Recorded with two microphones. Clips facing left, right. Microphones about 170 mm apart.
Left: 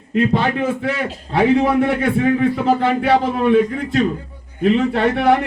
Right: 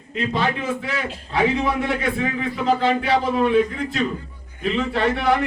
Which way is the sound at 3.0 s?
55° left (ahead or behind).